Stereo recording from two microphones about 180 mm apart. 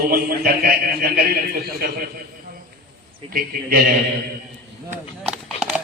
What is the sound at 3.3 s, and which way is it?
Speech, 55° right (ahead or behind).